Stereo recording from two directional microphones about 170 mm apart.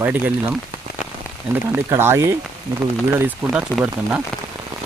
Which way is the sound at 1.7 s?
15° right (ahead or behind).